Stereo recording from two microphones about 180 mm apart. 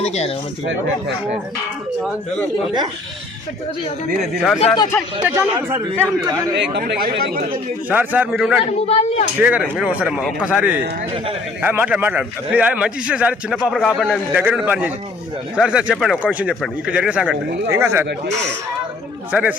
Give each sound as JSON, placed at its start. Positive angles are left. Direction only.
{"t": 0.0, "sound": "speech", "side_deg": 35}
{"t": 0.6, "sound": "speech", "side_deg": -85}
{"t": 4.6, "sound": "a man's voice", "side_deg": 25}
{"t": 5.2, "sound": "a man's voice", "side_deg": -15}
{"t": 6.6, "sound": "speech", "side_deg": -65}
{"t": 7.9, "sound": "a man's voice", "side_deg": -10}
{"t": 8.9, "sound": "speech", "side_deg": 35}
{"t": 9.4, "sound": "a man's voice", "side_deg": -5}
{"t": 19.3, "sound": "a man's voice", "side_deg": -10}